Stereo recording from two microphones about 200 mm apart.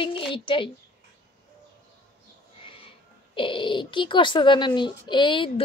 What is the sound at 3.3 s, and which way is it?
Speech, 25° left (ahead or behind).